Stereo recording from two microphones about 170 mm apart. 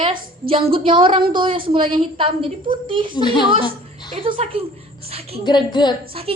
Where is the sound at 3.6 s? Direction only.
25° left (ahead or behind).